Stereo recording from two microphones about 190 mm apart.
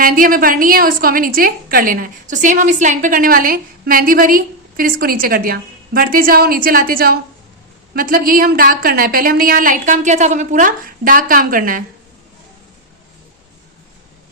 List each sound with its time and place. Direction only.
0.0 s a woman's voice: 45° right (ahead or behind)